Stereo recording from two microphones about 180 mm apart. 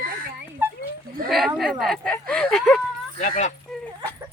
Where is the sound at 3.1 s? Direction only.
40° left (ahead or behind).